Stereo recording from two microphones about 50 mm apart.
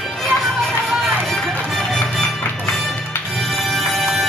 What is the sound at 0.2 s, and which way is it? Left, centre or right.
Music, centre.